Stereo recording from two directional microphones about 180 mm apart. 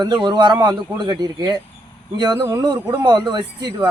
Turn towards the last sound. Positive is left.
turn(degrees=-25)  # may be behind; listen again after turning